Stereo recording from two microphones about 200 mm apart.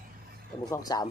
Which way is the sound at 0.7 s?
20° left (ahead or behind).